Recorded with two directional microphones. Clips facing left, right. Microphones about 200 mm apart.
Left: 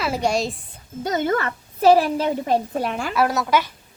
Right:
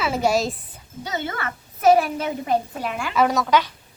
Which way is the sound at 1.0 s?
45° left (ahead or behind).